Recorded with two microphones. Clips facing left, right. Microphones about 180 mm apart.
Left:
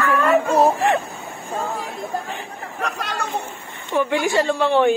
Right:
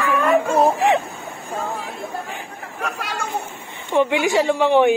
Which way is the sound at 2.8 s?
10° right (ahead or behind).